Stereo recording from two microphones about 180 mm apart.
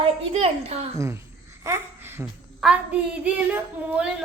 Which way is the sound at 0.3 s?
35° right (ahead or behind).